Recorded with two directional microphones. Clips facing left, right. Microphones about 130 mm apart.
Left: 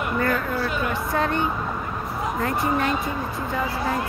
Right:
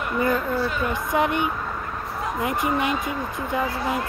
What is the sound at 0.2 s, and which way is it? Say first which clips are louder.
A woman's voice: right 4 dB; 15° right (ahead or behind).